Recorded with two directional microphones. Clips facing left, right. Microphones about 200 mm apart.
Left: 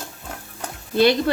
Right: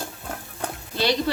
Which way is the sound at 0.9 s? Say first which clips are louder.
Left 7 dB; 50° left (ahead or behind).